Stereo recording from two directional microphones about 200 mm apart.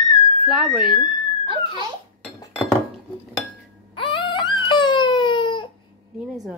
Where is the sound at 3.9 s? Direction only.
25° left (ahead or behind).